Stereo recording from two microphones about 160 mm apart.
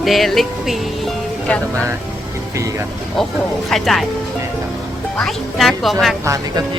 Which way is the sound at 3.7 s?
Centre (ahead or behind).